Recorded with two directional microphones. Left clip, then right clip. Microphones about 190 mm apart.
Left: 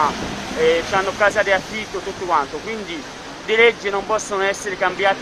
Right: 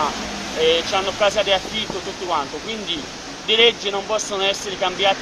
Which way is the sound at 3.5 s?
40° left (ahead or behind).